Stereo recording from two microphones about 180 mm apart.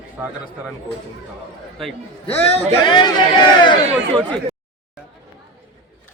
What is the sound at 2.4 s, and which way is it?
Speech, 25° left (ahead or behind).